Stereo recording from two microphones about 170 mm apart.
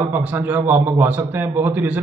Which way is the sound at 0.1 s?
10° right (ahead or behind).